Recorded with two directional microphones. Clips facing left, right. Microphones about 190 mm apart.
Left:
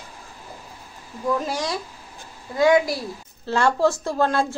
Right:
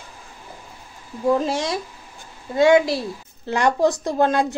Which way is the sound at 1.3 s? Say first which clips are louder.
Right 4 dB; 25° right (ahead or behind).